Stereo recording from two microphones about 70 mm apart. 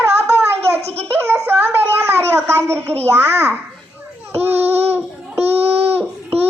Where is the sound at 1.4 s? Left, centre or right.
Right.